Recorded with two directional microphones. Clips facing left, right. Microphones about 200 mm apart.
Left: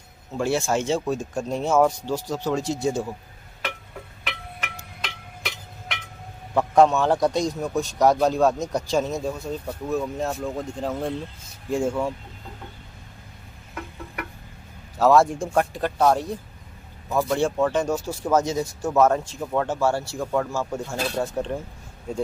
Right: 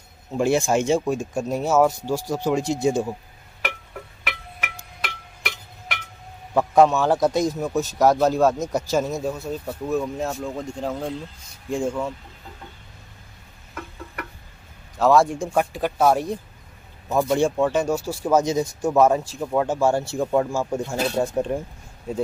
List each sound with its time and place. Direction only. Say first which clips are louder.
0.3 s speech: right 3 dB; 15° right (ahead or behind)
4.3 s music: right 1 dB; 5° right (ahead or behind)
6.5 s a man's voice: right 1 dB; 5° right (ahead or behind)
15.0 s a man's voice: even; centre (ahead or behind)